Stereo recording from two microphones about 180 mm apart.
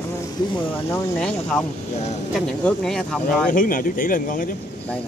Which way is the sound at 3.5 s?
50° left (ahead or behind).